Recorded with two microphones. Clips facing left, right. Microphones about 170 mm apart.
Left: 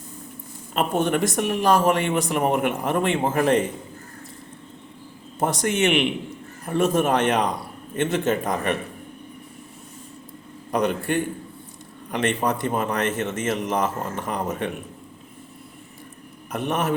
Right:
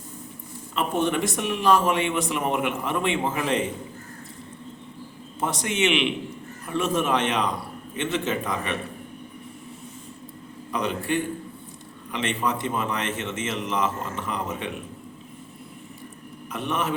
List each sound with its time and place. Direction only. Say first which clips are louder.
0.7 s a man's voice: left 2 dB; 50° left (ahead or behind)
5.4 s a man's voice: left 3 dB; 45° left (ahead or behind)
10.7 s a man's voice: left 4 dB; 50° left (ahead or behind)
16.5 s a man's voice: left 3 dB; 45° left (ahead or behind)